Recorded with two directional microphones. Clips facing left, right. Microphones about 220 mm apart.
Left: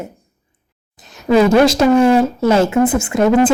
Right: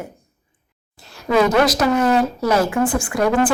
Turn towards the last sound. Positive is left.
turn(degrees=25)  # may be behind; listen again after turning